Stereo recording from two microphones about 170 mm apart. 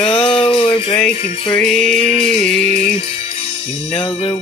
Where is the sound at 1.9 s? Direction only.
40° left (ahead or behind).